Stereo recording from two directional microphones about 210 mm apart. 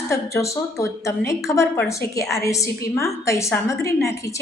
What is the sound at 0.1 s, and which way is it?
A woman's voice, 15° left (ahead or behind).